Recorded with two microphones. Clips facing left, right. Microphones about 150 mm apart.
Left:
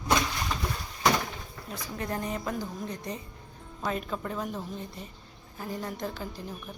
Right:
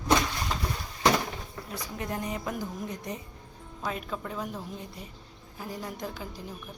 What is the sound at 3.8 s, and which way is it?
Speech, centre (ahead or behind).